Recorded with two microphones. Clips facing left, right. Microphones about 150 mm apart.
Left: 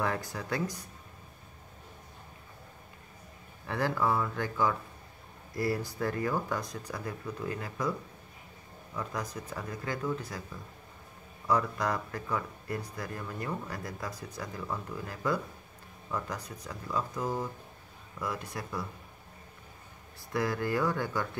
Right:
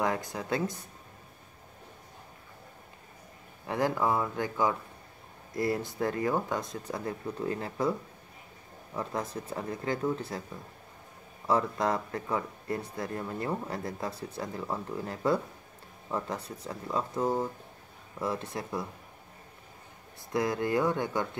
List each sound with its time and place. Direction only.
0.0 s speech: 20° right (ahead or behind)
3.6 s speech: 20° right (ahead or behind)
8.9 s speech: 30° right (ahead or behind)
20.3 s speech: 20° right (ahead or behind)